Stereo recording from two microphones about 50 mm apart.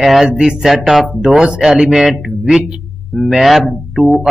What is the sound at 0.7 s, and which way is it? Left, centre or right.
Speech, centre.